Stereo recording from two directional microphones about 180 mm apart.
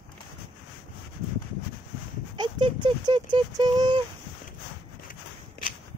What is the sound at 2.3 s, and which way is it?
Clip-clop, 25° right (ahead or behind).